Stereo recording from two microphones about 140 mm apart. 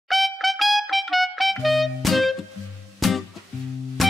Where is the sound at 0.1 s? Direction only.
Centre (ahead or behind).